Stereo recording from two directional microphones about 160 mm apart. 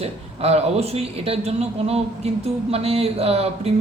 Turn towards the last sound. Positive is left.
turn(degrees=-40)  # may be behind; listen again after turning